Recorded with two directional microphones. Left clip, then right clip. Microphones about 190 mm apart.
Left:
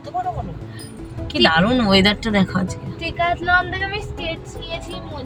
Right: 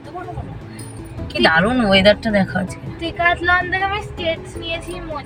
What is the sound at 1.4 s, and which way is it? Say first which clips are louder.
Speech: right 2 dB; 10° left (ahead or behind).